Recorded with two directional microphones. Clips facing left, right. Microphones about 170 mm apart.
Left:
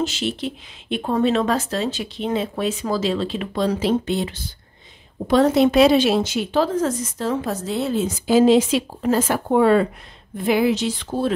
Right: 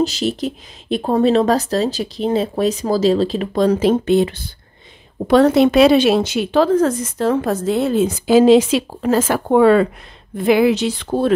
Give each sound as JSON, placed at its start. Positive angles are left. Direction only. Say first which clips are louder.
{"t": 0.0, "sound": "speech", "louder": "right 5 dB", "side_deg": -40}
{"t": 5.3, "sound": "a woman's voice", "louder": "right 4 dB", "side_deg": -70}
{"t": 10.3, "sound": "a woman's voice", "louder": "right 5 dB", "side_deg": -80}